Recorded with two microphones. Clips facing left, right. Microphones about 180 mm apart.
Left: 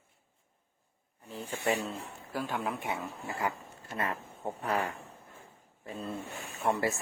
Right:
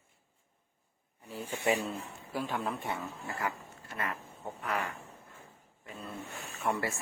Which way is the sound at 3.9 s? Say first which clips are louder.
Left 3 dB; 30° left (ahead or behind).